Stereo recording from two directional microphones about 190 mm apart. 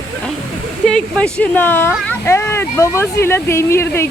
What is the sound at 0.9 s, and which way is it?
Speech, 5° left (ahead or behind).